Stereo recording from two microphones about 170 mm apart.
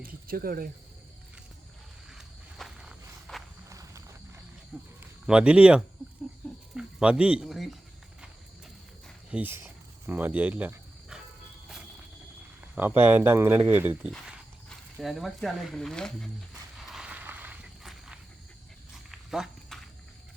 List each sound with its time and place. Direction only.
0.0 s speech: 60° right (ahead or behind)
2.0 s walk: centre (ahead or behind)
3.7 s walk: 20° right (ahead or behind)
4.7 s speech: 10° right (ahead or behind)
9.3 s a sound: 10° right (ahead or behind)
12.7 s speech: 10° right (ahead or behind); by 16.3 s 5° left (ahead or behind)
16.7 s a sound: centre (ahead or behind)